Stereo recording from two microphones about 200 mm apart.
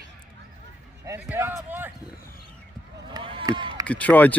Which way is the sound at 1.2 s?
10° right (ahead or behind).